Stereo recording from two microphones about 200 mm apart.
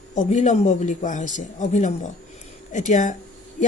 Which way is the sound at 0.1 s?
35° left (ahead or behind).